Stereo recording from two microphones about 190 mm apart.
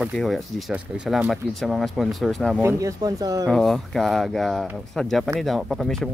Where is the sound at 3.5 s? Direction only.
Centre (ahead or behind).